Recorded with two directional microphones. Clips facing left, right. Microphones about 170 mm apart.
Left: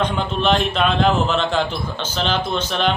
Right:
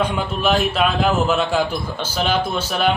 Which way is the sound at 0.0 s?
5° right (ahead or behind).